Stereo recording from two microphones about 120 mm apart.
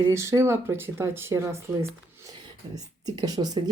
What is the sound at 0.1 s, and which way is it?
Speech, 25° right (ahead or behind).